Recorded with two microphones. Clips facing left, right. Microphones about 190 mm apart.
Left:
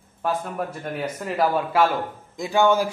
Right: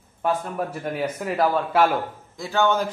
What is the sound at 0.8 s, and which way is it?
Speech, 5° right (ahead or behind).